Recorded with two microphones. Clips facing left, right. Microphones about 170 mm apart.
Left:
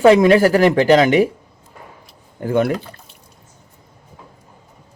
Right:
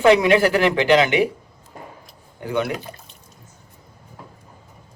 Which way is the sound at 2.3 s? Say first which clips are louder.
Left 6 dB; 45° left (ahead or behind).